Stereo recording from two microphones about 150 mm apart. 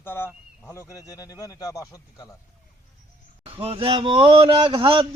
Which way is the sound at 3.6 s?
40° right (ahead or behind).